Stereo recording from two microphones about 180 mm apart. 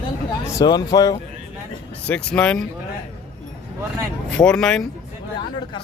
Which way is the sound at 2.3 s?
5° left (ahead or behind).